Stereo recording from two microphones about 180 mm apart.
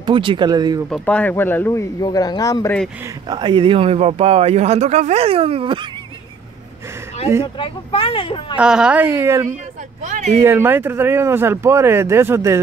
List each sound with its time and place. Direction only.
0.0 s speech: 30° right (ahead or behind)
0.8 s speech: 5° left (ahead or behind); by 2.7 s 20° left (ahead or behind)
3.3 s speech: 25° right (ahead or behind)
7.5 s speech: 30° left (ahead or behind)
8.5 s speech: 5° right (ahead or behind)
10.0 s speech: 40° right (ahead or behind)
10.4 s speech: 10° right (ahead or behind)